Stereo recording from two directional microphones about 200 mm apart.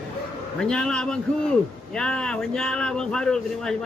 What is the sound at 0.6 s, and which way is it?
Speech, 5° left (ahead or behind).